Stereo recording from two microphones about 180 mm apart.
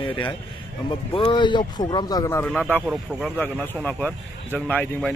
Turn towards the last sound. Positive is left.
turn(degrees=10)  # may be behind; listen again after turning